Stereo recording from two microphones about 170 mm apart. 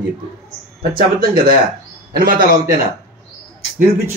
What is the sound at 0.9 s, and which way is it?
A man's voice, 60° right (ahead or behind).